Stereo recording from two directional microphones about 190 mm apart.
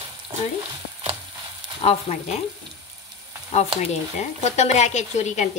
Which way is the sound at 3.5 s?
35° left (ahead or behind).